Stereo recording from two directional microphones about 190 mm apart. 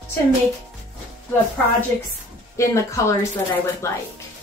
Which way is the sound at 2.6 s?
15° left (ahead or behind).